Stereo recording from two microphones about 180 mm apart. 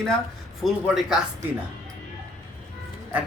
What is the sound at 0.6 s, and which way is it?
Speech, 5° right (ahead or behind).